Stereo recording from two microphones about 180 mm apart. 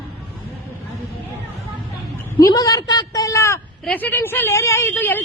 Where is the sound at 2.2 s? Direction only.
10° left (ahead or behind).